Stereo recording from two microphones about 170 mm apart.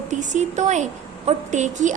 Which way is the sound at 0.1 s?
45° right (ahead or behind).